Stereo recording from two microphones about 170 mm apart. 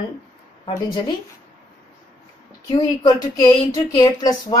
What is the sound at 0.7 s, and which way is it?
Speech, 30° left (ahead or behind).